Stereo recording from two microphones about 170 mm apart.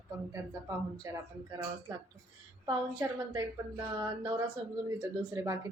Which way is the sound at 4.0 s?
20° right (ahead or behind).